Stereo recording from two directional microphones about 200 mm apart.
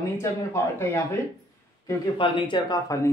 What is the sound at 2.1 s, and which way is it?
Speech, 25° left (ahead or behind).